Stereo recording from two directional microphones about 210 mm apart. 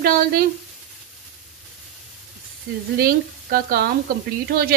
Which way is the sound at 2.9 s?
45° right (ahead or behind).